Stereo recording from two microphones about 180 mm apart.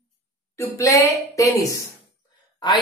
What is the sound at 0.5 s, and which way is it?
A woman's voice, 15° left (ahead or behind).